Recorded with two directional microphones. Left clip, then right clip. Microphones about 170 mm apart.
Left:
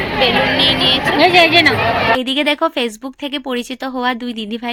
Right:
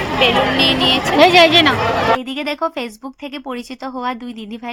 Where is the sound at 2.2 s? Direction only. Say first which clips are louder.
Left 6 dB; 25° left (ahead or behind).